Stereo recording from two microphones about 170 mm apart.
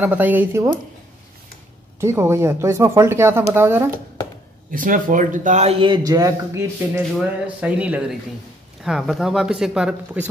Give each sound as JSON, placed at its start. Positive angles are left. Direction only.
{"t": 0.0, "sound": "speech", "side_deg": -10}
{"t": 2.0, "sound": "speech", "side_deg": -15}
{"t": 4.6, "sound": "speech", "side_deg": -50}
{"t": 7.2, "sound": "speech", "side_deg": -5}